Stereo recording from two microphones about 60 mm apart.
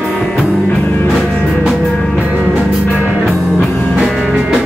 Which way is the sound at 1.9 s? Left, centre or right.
Centre.